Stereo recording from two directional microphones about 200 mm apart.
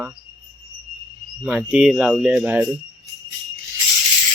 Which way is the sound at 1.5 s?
5° right (ahead or behind).